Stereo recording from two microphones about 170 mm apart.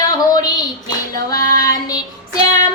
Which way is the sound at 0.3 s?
25° left (ahead or behind).